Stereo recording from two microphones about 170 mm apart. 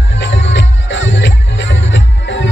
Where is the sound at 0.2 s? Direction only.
90° left.